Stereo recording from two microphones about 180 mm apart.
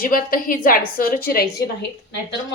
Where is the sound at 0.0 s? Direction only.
50° left (ahead or behind).